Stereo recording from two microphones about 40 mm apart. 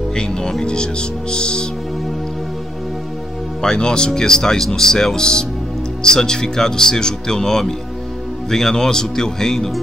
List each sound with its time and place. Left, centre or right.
0.1 s speech: centre
3.6 s speech: centre